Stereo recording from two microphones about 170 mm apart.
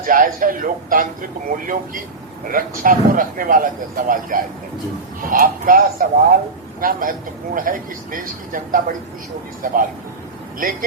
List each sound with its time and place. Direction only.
0.0 s a man's voice: 55° right (ahead or behind)